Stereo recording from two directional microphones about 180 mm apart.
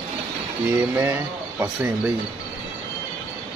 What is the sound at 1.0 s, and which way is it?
Speech, 10° right (ahead or behind).